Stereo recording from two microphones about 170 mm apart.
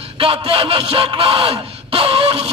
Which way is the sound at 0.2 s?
30° right (ahead or behind).